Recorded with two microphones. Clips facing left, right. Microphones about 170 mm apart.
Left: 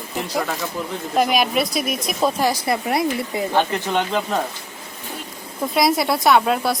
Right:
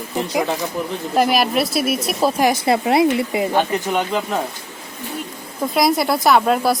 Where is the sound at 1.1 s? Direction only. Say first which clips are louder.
Right 2 dB; centre (ahead or behind).